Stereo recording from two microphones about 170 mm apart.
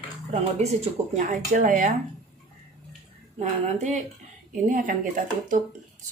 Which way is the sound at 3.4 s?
40° right (ahead or behind).